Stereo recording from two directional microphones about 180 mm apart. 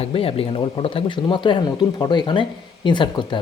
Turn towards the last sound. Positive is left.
turn(degrees=25)  # may be behind; listen again after turning